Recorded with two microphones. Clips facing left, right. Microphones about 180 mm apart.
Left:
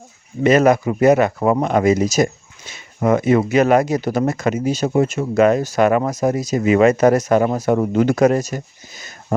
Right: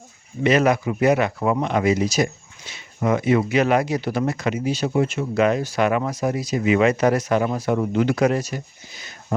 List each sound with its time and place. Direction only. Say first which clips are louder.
0.4 s speech: left 5 dB; 45° left (ahead or behind)